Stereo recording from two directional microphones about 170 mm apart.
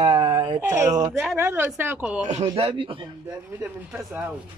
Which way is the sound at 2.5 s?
35° right (ahead or behind).